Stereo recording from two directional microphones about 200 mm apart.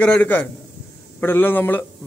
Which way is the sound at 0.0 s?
10° left (ahead or behind).